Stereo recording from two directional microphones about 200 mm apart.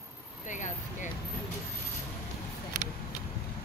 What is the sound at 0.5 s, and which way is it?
Speech, 40° left (ahead or behind).